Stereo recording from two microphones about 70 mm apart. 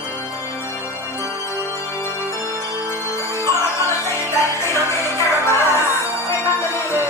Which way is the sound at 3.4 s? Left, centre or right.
Left.